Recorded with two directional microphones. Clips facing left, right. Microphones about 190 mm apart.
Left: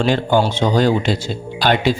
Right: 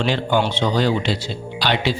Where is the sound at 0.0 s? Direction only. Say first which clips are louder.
Left 4 dB; 45° left (ahead or behind).